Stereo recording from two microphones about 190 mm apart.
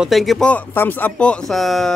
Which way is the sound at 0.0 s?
Centre (ahead or behind).